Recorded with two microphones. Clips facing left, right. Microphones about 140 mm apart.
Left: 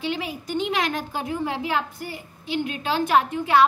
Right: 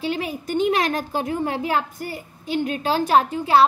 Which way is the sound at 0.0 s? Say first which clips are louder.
Right 3 dB; 45° right (ahead or behind).